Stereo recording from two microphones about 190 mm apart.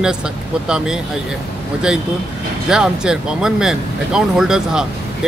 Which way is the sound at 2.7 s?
5° right (ahead or behind).